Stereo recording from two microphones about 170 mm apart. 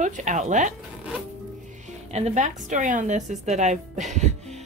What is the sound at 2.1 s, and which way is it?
Speech, 40° right (ahead or behind).